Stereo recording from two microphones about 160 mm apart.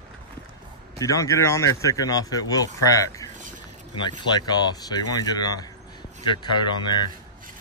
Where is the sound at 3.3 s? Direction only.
55° right (ahead or behind).